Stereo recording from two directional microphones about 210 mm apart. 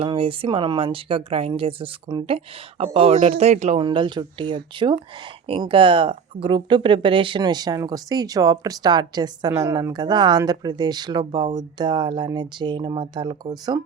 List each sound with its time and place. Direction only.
0.0 s speech: 25° right (ahead or behind)